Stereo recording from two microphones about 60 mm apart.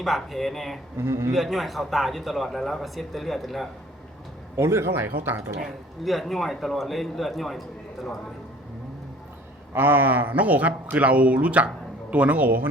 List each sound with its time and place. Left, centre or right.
0.0 s speech: centre
0.9 s a man's voice: right
1.3 s speech: centre
4.5 s speech: right
6.1 s speech: centre
9.7 s speech: right